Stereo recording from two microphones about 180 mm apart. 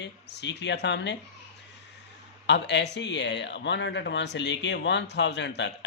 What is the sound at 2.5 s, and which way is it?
Speech, 75° left (ahead or behind).